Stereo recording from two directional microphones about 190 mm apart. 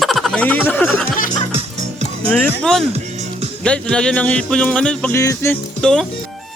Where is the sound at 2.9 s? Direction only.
35° right (ahead or behind).